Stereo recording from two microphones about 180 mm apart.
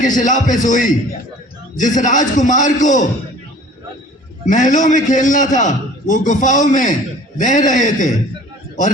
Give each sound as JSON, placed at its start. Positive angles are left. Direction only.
{"t": 0.0, "sound": "a man's voice", "side_deg": 45}
{"t": 4.4, "sound": "a man's voice", "side_deg": 45}